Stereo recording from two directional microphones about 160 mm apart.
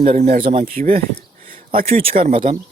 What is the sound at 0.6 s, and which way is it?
Speech, 65° right (ahead or behind).